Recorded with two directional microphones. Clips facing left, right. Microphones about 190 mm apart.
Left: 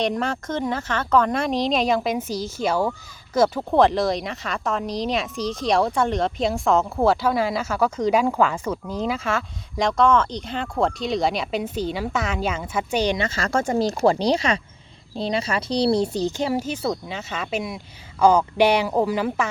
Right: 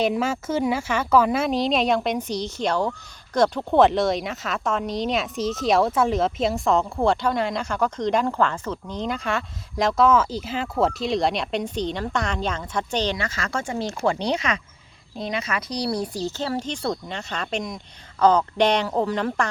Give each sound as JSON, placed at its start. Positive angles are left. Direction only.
{"t": 0.0, "sound": "speech", "side_deg": -5}
{"t": 13.1, "sound": "a woman's voice", "side_deg": 25}